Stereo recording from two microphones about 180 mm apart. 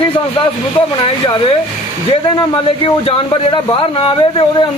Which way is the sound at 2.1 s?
30° left (ahead or behind).